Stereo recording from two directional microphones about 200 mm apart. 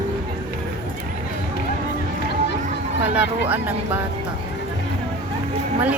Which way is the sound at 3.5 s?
10° right (ahead or behind).